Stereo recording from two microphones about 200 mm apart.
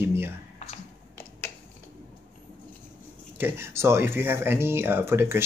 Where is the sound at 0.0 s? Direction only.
10° right (ahead or behind).